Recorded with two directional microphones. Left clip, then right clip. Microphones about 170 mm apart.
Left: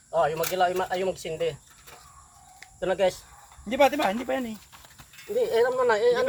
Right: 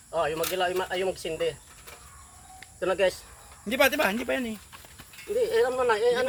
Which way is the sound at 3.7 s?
45° right (ahead or behind).